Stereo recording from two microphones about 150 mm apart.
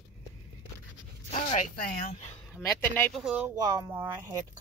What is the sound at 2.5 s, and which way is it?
Speech, 15° left (ahead or behind).